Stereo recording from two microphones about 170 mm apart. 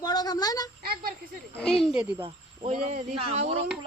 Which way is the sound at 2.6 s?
45° right (ahead or behind).